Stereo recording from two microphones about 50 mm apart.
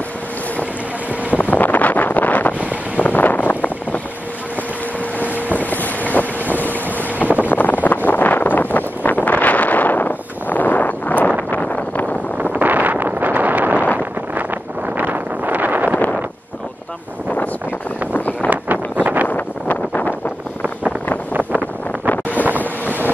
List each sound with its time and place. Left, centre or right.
1.3 s wind noise: left
5.6 s boat: left
7.4 s wind noise: left
11.5 s vehicle: left
12.5 s wind noise: right
18.1 s vehicle: left
18.5 s vehicle: right
19.2 s a sound: left
21.5 s wind noise: left
22.3 s wind noise: right
22.6 s wind noise: left